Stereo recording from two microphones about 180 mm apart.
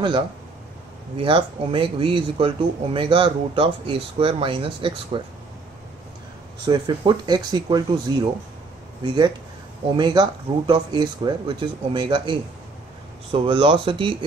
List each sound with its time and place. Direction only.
1.1 s speech: 30° right (ahead or behind)
6.6 s speech: 25° right (ahead or behind)
9.0 s speech: 25° right (ahead or behind)